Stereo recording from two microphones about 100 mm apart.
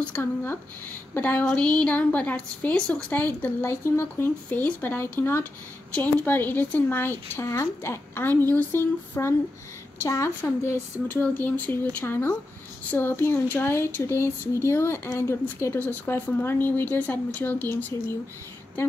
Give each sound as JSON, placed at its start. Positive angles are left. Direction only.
{"t": 0.2, "sound": "a woman's voice", "side_deg": 20}